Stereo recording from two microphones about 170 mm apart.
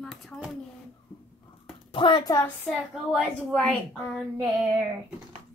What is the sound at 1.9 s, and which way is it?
Speech, 30° left (ahead or behind).